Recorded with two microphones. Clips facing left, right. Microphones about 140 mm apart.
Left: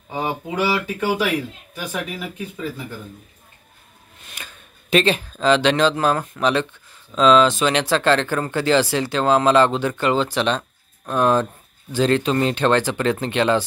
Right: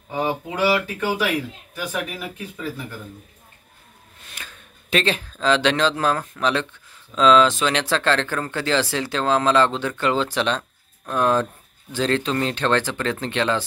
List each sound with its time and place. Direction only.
0.1 s speech: 15° left (ahead or behind)
4.4 s speech: 5° left (ahead or behind)